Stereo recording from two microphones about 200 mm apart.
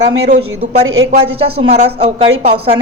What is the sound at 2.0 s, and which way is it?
Speech, 30° right (ahead or behind).